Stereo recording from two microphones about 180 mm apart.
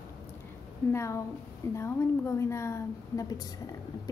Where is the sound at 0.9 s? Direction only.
15° left (ahead or behind).